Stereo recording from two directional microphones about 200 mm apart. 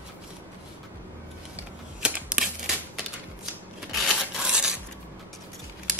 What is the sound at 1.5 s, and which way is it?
Typewriter, 5° right (ahead or behind).